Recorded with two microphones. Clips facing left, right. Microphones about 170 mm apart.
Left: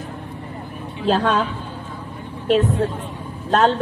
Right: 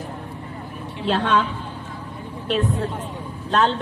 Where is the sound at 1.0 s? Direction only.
40° left (ahead or behind).